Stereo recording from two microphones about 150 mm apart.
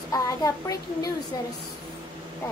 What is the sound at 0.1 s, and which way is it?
A child's voice, 20° left (ahead or behind).